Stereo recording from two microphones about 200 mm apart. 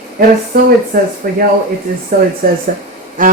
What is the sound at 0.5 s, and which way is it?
Speech, 45° right (ahead or behind).